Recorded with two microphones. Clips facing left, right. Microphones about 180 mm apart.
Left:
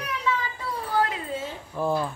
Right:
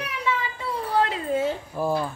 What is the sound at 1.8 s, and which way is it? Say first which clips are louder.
Speech: even; 5° right (ahead or behind).